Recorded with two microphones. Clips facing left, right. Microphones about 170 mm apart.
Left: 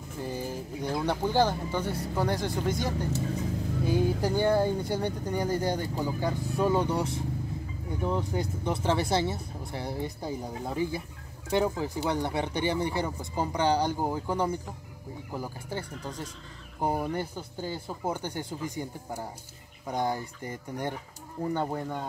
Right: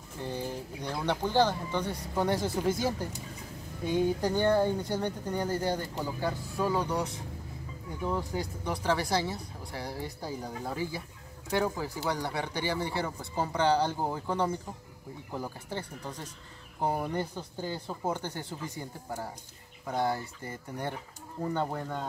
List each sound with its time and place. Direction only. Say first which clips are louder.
0.2 s speech: left 1 dB; 10° left (ahead or behind)
3.8 s speech: even; 10° left (ahead or behind)
16.8 s speech: left 1 dB; 10° left (ahead or behind)